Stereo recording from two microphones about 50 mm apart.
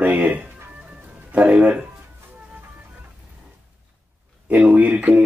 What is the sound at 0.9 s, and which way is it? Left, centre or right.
Music, right.